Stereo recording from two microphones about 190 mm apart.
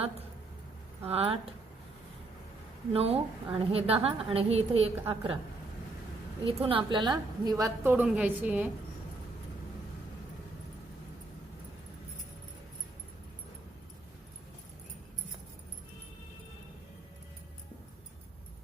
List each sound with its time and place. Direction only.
1.0 s a woman's voice: 30° right (ahead or behind)
2.9 s a woman's voice: 30° right (ahead or behind)
6.4 s a woman's voice: 30° right (ahead or behind); by 8.7 s 10° right (ahead or behind)